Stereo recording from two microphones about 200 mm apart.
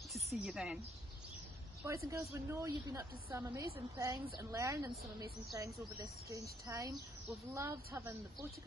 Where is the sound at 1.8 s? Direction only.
15° right (ahead or behind).